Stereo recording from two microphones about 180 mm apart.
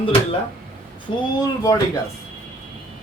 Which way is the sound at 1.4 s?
20° left (ahead or behind).